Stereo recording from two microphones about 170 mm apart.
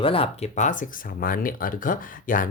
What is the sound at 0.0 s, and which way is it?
Speech, 35° left (ahead or behind).